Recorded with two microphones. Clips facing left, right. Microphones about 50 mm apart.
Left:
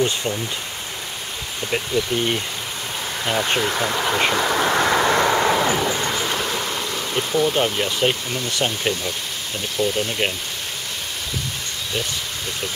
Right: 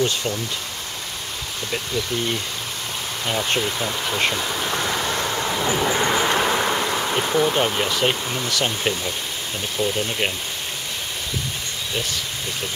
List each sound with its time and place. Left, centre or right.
2.1 s speech: left
3.3 s speech: centre
3.7 s speech: left
4.4 s vehicle: left
5.9 s a sound: centre
7.2 s speech: right
7.5 s speech: centre